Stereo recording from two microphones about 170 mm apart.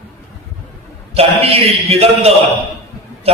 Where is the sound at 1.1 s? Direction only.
35° right (ahead or behind).